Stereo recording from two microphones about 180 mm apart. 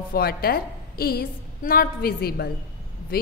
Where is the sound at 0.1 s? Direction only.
60° left (ahead or behind).